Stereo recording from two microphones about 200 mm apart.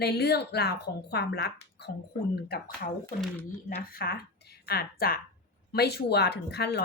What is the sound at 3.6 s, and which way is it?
Speech, 45° left (ahead or behind).